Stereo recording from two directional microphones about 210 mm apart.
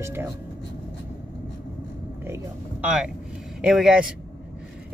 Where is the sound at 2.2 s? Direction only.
10° right (ahead or behind).